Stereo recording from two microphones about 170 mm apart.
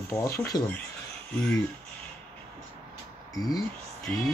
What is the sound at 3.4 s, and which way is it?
Speech, 20° left (ahead or behind).